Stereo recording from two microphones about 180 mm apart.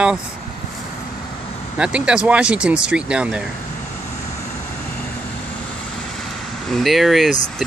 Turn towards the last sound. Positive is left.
turn(degrees=0)  # may be behind; listen again after turning